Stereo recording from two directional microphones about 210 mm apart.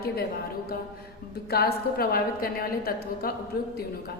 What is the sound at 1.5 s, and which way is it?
A woman's voice, 45° left (ahead or behind).